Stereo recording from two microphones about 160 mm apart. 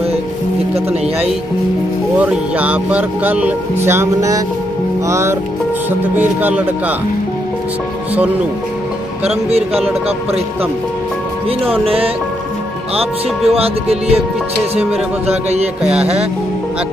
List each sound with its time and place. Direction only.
2.1 s speech: 10° right (ahead or behind)
9.5 s speech: 40° right (ahead or behind)
13.5 s speech: 40° right (ahead or behind)
15.8 s music: 5° right (ahead or behind)